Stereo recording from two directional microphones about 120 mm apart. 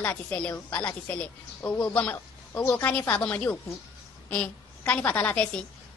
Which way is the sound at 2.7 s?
10° left (ahead or behind).